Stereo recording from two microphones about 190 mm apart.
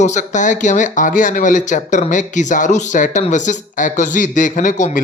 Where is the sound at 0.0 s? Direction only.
40° left (ahead or behind).